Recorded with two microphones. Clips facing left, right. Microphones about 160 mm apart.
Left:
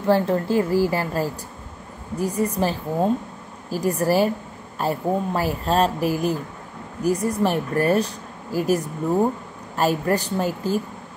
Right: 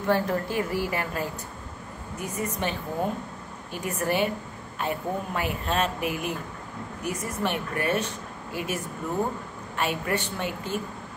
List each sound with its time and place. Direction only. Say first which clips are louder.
0.0 s speech: left 5 dB; 30° left (ahead or behind)